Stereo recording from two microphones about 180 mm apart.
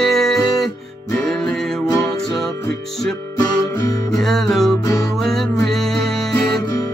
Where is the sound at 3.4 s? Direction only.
20° left (ahead or behind).